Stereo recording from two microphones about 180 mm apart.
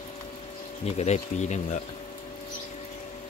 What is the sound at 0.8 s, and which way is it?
Speech, 35° left (ahead or behind).